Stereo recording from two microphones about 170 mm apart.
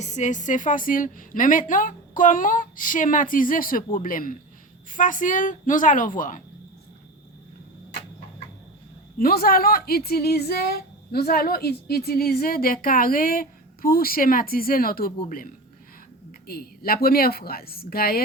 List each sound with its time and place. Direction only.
0.0 s a woman's voice: 45° left (ahead or behind)
9.1 s a woman's voice: 60° left (ahead or behind)
16.5 s a woman's voice: 60° left (ahead or behind)